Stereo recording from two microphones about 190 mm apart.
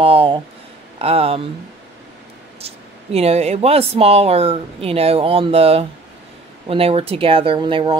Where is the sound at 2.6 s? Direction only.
35° right (ahead or behind).